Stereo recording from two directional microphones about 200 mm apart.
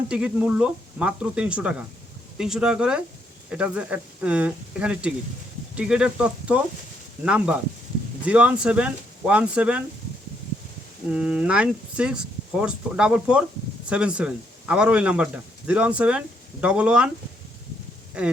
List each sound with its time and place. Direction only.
0.1 s speech: 5° right (ahead or behind)
11.1 s speech: 5° right (ahead or behind)